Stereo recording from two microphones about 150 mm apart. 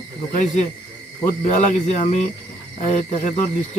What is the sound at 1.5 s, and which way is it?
Speech, 50° left (ahead or behind).